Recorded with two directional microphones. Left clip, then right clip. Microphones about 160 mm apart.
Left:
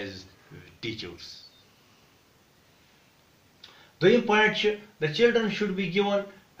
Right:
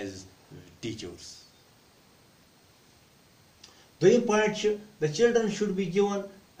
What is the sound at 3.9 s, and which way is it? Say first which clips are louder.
Speech: left 1 dB; 15° right (ahead or behind).